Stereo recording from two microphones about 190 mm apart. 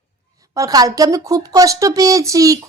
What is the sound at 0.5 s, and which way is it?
Speech, 20° right (ahead or behind).